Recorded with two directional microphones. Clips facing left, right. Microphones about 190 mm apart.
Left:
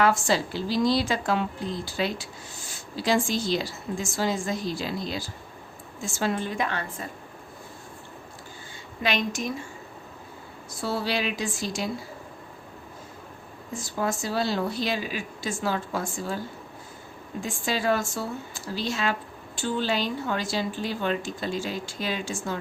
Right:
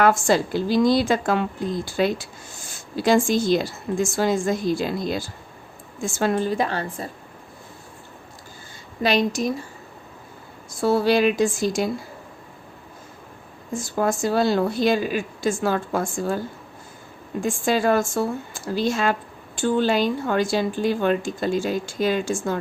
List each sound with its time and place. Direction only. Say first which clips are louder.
0.0 s a woman's voice: right 4 dB; 50° right (ahead or behind); by 7.1 s 35° right (ahead or behind)
9.0 s a woman's voice: right 7 dB; 35° right (ahead or behind)
10.8 s a woman's voice: right 10 dB; 50° right (ahead or behind)
13.9 s a woman's voice: right 6 dB; 50° right (ahead or behind)
17.4 s a woman's voice: right 6 dB; 50° right (ahead or behind)